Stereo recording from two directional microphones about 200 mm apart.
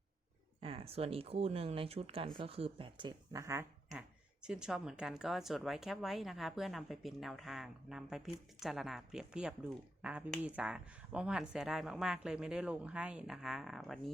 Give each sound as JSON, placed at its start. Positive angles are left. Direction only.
{"t": 0.6, "sound": "speech", "side_deg": -30}
{"t": 4.4, "sound": "speech", "side_deg": -5}